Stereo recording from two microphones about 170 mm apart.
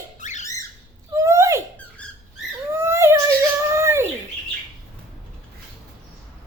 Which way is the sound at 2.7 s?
15° right (ahead or behind).